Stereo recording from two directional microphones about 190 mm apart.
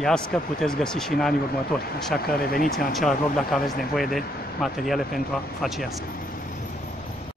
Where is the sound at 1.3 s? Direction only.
50° left (ahead or behind).